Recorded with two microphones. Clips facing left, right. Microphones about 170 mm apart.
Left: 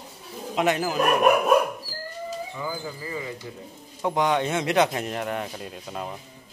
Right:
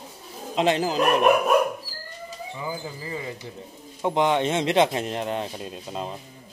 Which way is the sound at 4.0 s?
20° right (ahead or behind).